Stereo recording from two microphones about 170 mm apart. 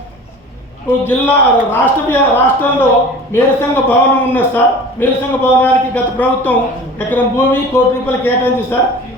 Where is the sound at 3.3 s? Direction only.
15° left (ahead or behind).